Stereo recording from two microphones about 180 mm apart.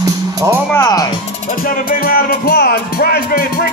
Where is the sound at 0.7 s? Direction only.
20° left (ahead or behind).